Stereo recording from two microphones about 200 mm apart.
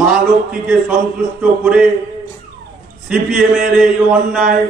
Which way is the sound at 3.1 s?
5° right (ahead or behind).